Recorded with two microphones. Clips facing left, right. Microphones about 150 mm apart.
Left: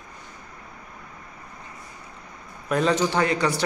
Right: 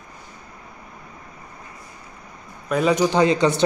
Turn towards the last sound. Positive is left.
turn(degrees=-20)  # may be behind; listen again after turning